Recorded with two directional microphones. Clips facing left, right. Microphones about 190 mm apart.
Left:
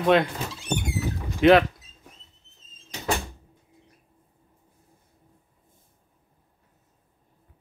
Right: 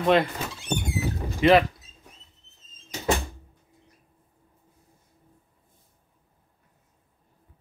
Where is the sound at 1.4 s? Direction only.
Centre (ahead or behind).